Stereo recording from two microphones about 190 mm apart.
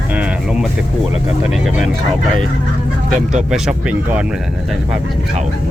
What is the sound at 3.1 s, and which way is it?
Speech, 40° right (ahead or behind).